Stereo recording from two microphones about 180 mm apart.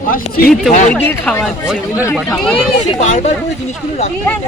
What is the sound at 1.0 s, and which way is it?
Speech, 10° left (ahead or behind).